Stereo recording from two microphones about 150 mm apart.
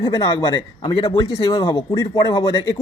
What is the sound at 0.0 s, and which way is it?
A woman's voice, 25° left (ahead or behind).